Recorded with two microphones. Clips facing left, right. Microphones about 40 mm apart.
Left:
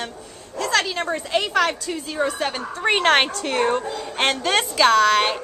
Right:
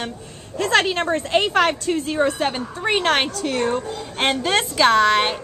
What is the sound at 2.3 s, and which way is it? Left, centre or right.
Speech, centre.